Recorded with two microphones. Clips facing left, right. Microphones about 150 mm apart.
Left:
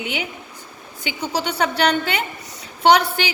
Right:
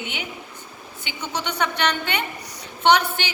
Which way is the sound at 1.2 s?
35° left (ahead or behind).